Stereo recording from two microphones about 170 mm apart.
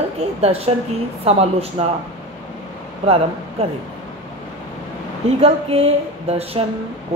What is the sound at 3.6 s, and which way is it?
Speech, 40° right (ahead or behind).